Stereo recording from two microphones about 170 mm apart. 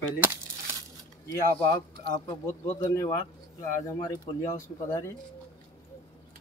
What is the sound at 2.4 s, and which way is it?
Speech, 15° left (ahead or behind).